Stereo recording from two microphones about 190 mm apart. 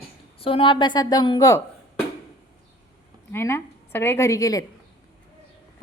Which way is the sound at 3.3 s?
15° left (ahead or behind).